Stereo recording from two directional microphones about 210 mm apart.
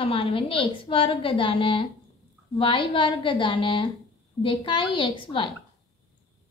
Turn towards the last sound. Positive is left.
turn(degrees=25)  # may be behind; listen again after turning